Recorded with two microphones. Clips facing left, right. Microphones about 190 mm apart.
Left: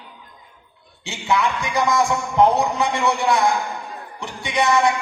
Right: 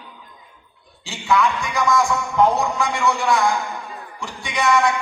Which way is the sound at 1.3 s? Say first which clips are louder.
Right 2 dB; 20° left (ahead or behind).